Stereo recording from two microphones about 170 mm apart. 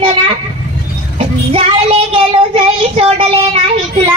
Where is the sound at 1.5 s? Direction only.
35° right (ahead or behind).